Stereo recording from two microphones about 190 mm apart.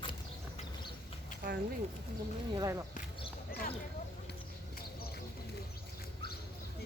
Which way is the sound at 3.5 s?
55° left (ahead or behind).